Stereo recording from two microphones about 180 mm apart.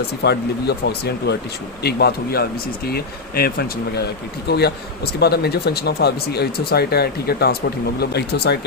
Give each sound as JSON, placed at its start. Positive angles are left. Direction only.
{"t": 0.2, "sound": "speech", "side_deg": 65}